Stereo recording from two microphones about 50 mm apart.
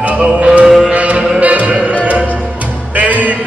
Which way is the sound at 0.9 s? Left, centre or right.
Right.